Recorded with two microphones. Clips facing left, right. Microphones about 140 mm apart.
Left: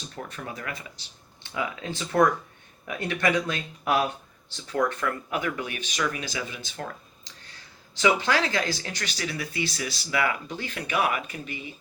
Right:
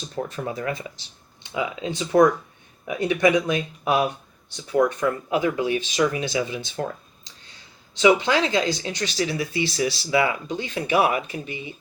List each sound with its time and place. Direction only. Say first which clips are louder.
0.2 s speech: right 9 dB; 30° right (ahead or behind)
7.9 s speech: right 5 dB; 20° right (ahead or behind)
10.9 s speech: right 6 dB; 35° right (ahead or behind)